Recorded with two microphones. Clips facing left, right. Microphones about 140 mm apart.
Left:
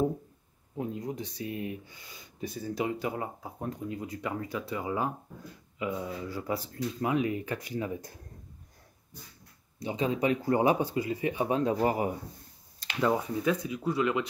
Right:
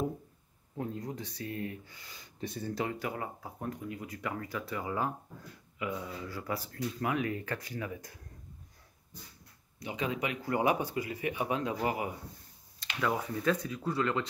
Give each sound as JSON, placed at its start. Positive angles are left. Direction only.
{"t": 0.7, "sound": "speech", "side_deg": 20}
{"t": 2.4, "sound": "speech", "side_deg": 5}
{"t": 2.8, "sound": "speech", "side_deg": 20}
{"t": 7.9, "sound": "speech", "side_deg": 30}
{"t": 9.8, "sound": "speech", "side_deg": 30}
{"t": 13.0, "sound": "speech", "side_deg": 25}
{"t": 13.3, "sound": "speech", "side_deg": 15}